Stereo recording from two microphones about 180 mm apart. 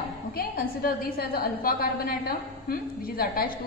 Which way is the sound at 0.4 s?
55° left (ahead or behind).